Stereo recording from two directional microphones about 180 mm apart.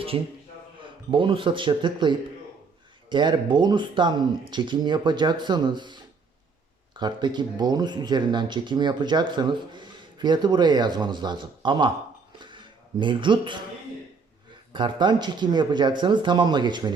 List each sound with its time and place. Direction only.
0.1 s a man's voice: 30° right (ahead or behind)
12.4 s a sound: 25° right (ahead or behind)
14.7 s speech: 25° right (ahead or behind)